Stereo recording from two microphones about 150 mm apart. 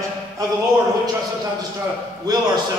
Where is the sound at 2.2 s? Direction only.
25° right (ahead or behind).